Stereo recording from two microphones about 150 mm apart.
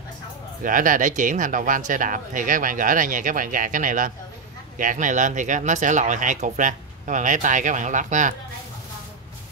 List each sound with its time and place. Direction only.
0.7 s speech: 65° right (ahead or behind)